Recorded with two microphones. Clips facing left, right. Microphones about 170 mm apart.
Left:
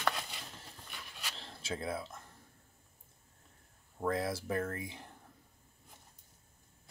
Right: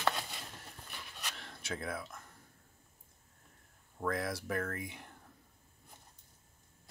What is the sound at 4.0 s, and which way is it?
Speech, 25° left (ahead or behind).